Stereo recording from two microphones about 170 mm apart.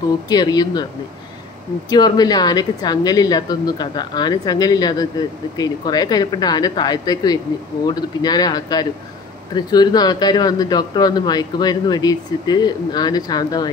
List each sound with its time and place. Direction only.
0.3 s a man's voice: 25° left (ahead or behind)
1.9 s a man's voice: 25° left (ahead or behind)